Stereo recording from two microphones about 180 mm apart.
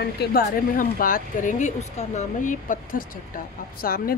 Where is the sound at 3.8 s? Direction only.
55° left (ahead or behind).